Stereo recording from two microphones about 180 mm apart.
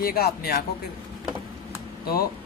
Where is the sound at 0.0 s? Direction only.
60° left (ahead or behind).